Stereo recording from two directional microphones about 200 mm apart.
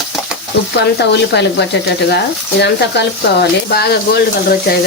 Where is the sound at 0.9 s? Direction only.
55° left (ahead or behind).